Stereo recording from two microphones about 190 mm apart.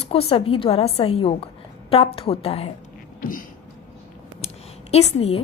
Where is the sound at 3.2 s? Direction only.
45° left (ahead or behind).